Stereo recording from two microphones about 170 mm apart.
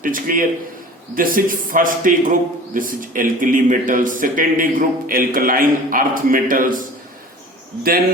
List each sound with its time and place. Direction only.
0.0 s a man's voice: 55° right (ahead or behind)